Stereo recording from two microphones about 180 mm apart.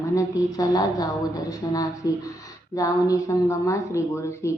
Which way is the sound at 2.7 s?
20° left (ahead or behind).